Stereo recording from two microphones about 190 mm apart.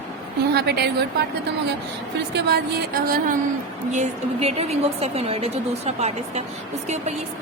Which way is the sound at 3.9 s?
35° right (ahead or behind).